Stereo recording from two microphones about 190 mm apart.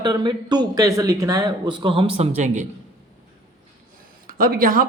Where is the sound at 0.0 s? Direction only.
20° right (ahead or behind); by 2.6 s 40° right (ahead or behind).